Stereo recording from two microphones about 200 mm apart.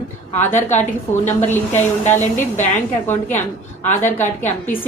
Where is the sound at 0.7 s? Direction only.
35° left (ahead or behind).